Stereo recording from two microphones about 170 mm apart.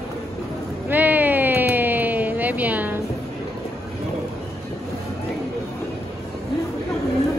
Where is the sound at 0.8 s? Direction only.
10° right (ahead or behind).